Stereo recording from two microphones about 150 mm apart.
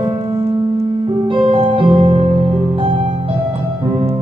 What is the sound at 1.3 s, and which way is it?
Keyboard, 35° right (ahead or behind).